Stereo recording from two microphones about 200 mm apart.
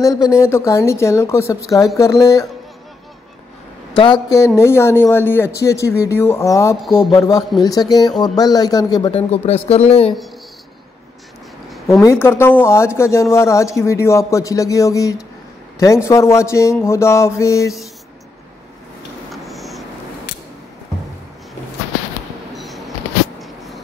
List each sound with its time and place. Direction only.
0.0 s speech: 15° left (ahead or behind)
3.9 s speech: 25° left (ahead or behind)
9.7 s speech: 30° left (ahead or behind)
12.0 s speech: 15° left (ahead or behind)
19.3 s a sound: centre (ahead or behind)
22.6 s a sound: centre (ahead or behind)